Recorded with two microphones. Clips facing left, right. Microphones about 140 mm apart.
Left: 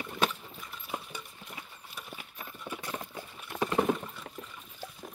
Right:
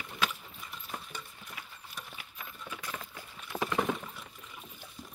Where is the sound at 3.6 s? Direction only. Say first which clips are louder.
Left 3 dB; 25° left (ahead or behind).